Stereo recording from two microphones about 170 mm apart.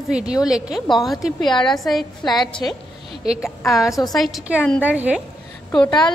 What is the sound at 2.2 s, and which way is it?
Speech, 25° left (ahead or behind).